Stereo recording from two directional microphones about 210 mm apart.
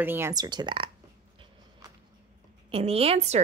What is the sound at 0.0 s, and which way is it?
Speech, 10° right (ahead or behind).